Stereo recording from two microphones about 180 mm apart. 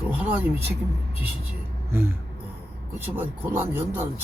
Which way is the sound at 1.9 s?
15° right (ahead or behind).